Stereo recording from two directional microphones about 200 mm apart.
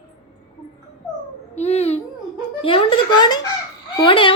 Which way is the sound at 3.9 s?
25° left (ahead or behind).